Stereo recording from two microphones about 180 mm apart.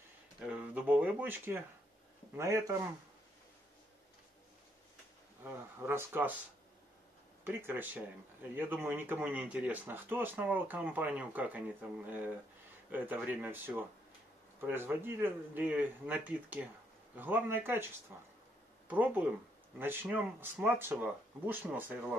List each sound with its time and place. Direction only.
0.4 s speech: 5° right (ahead or behind)
5.4 s speech: 15° right (ahead or behind)
7.4 s speech: 10° right (ahead or behind)
12.9 s speech: 10° right (ahead or behind)